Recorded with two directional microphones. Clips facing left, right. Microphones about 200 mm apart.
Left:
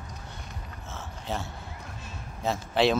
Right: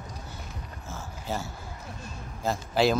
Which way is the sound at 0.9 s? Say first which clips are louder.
Right 1 dB; centre (ahead or behind).